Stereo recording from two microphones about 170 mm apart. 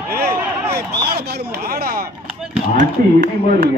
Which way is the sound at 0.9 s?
70° right (ahead or behind).